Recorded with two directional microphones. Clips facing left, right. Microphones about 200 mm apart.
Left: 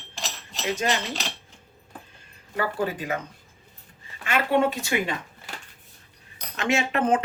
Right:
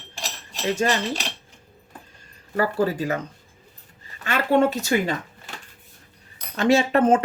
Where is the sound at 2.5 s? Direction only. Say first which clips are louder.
Right 5 dB; 40° right (ahead or behind).